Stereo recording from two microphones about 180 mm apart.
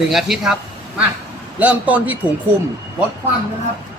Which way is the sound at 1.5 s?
10° right (ahead or behind).